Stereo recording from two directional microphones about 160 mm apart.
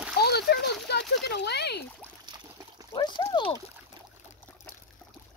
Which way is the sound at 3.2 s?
25° left (ahead or behind).